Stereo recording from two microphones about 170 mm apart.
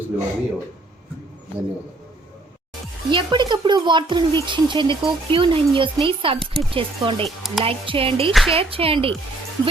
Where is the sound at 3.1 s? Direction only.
25° right (ahead or behind).